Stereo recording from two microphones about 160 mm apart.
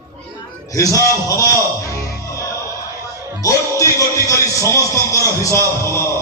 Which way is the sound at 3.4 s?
20° left (ahead or behind).